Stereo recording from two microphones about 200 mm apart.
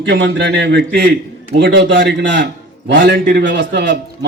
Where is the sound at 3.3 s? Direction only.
65° right (ahead or behind).